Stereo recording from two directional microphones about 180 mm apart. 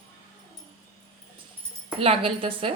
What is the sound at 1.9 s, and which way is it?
Speech, 30° right (ahead or behind).